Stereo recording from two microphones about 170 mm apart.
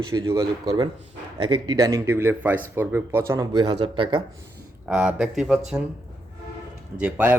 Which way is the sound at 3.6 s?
30° right (ahead or behind).